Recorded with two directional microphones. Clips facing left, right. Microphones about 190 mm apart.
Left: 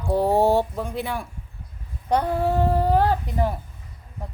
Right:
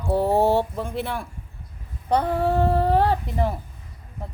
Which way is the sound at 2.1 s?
5° left (ahead or behind).